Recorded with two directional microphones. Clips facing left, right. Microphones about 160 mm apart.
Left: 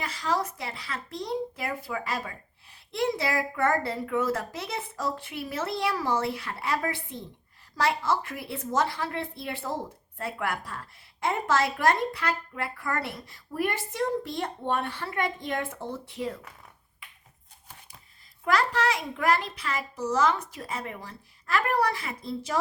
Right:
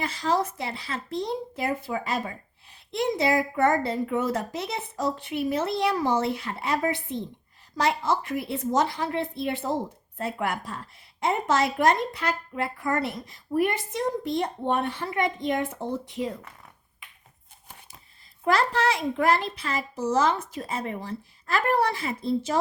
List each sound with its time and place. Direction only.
0.0 s speech: 25° right (ahead or behind)
18.4 s speech: 30° right (ahead or behind)